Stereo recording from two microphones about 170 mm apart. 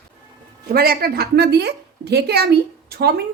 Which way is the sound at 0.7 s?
65° right (ahead or behind).